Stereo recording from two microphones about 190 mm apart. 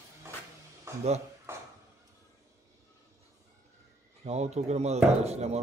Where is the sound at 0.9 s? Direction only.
15° right (ahead or behind).